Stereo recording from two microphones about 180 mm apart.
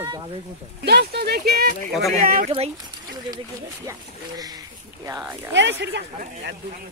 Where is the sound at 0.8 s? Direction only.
65° right (ahead or behind); by 2.5 s 50° right (ahead or behind).